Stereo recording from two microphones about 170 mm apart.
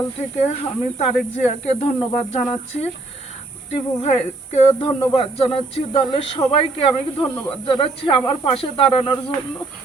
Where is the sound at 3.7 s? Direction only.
40° left (ahead or behind).